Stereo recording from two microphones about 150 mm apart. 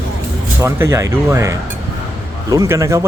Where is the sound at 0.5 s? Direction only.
15° right (ahead or behind).